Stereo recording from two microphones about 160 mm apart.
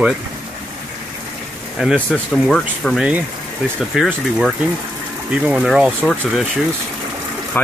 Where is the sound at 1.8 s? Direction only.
Centre (ahead or behind).